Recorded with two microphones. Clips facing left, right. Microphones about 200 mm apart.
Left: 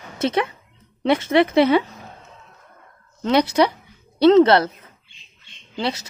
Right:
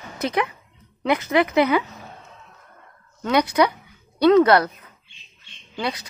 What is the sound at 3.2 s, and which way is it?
A woman's voice, 25° left (ahead or behind).